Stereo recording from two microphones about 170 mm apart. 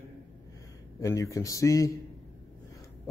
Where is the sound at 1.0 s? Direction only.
20° left (ahead or behind).